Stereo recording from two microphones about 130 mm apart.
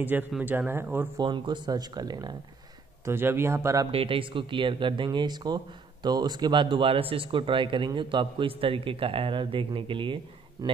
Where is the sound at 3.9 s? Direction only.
45° right (ahead or behind).